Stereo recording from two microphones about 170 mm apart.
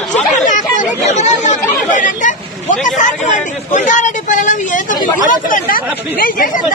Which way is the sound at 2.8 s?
50° left (ahead or behind).